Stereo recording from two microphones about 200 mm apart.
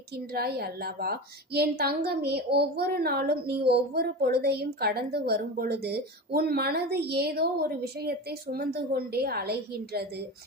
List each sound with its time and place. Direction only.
0.3 s a woman's voice: 50° right (ahead or behind)